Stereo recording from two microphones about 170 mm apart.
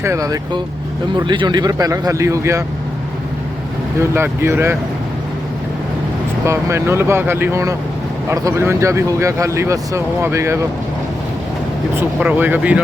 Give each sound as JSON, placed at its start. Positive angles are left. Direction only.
{"t": 0.0, "sound": "speech", "side_deg": -15}
{"t": 4.1, "sound": "speech", "side_deg": -15}
{"t": 6.4, "sound": "speech", "side_deg": -15}
{"t": 11.9, "sound": "speech", "side_deg": -10}